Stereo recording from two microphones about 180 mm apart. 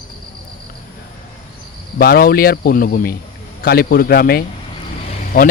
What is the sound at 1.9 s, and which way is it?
Speech, 55° left (ahead or behind).